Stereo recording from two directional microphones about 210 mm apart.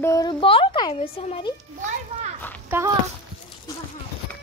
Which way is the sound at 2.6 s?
10° right (ahead or behind).